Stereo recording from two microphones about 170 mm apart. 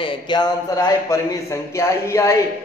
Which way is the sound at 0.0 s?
25° left (ahead or behind).